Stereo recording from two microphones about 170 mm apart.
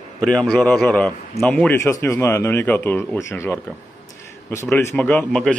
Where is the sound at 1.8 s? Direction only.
15° left (ahead or behind).